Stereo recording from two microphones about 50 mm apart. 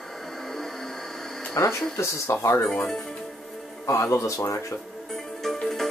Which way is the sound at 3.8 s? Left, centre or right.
Left.